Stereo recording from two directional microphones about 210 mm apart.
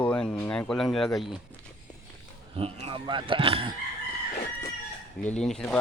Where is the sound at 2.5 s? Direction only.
25° right (ahead or behind).